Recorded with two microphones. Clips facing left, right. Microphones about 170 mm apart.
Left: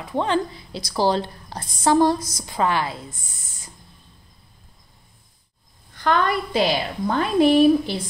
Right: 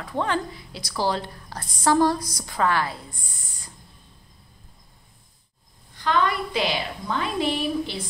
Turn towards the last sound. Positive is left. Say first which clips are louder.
# left 10 dB
turn(degrees=50)  # may be behind; listen again after turning